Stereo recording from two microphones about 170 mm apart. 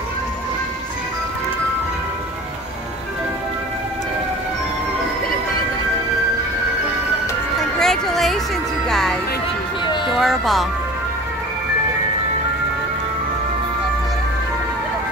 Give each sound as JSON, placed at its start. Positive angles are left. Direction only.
{"t": 7.8, "sound": "music", "side_deg": 0}
{"t": 10.1, "sound": "speech", "side_deg": 0}